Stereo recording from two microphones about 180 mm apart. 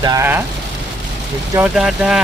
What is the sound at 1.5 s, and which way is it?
Speech, 5° right (ahead or behind).